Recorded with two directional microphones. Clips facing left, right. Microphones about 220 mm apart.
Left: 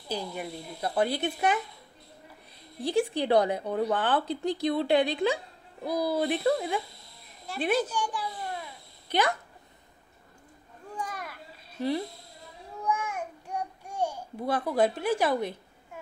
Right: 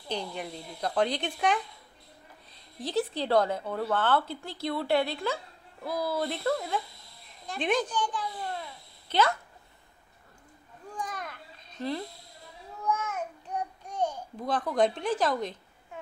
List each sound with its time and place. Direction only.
0.1 s speech: 5° left (ahead or behind)
2.8 s speech: 10° left (ahead or behind)
11.0 s children playing: 10° left (ahead or behind)
12.8 s babbling: 15° left (ahead or behind)